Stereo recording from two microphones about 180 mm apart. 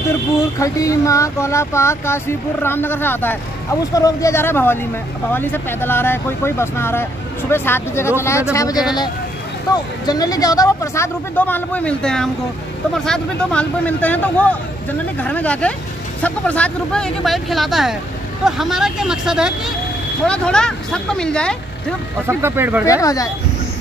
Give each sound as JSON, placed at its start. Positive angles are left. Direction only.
{"t": 0.6, "sound": "speech", "side_deg": 20}
{"t": 22.3, "sound": "speech", "side_deg": -10}
{"t": 22.8, "sound": "speech", "side_deg": 20}